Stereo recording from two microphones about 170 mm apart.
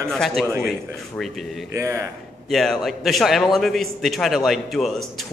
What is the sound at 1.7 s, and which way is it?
Speech, 15° right (ahead or behind).